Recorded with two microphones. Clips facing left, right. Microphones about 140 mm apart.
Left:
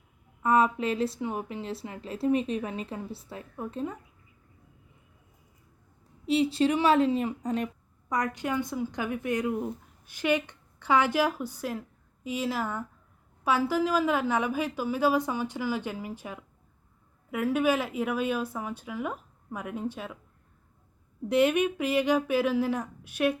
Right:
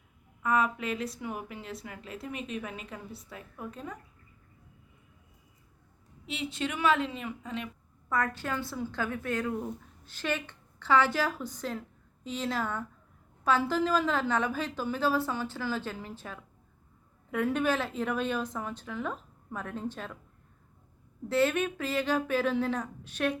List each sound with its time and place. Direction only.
0.4 s a woman's voice: 30° left (ahead or behind)
6.2 s a woman's voice: 35° left (ahead or behind)
8.1 s a woman's voice: 15° left (ahead or behind)
21.2 s a woman's voice: 15° left (ahead or behind)